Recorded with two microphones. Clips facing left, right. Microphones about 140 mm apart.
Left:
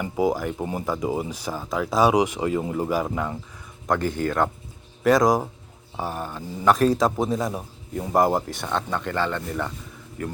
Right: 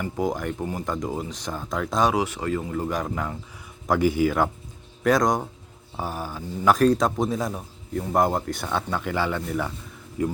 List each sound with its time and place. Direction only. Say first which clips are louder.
0.0 s a man's voice: left 3 dB; 5° left (ahead or behind)
3.8 s a man's voice: right 3 dB; 10° right (ahead or behind)
10.2 s speech: right 6 dB; 20° right (ahead or behind)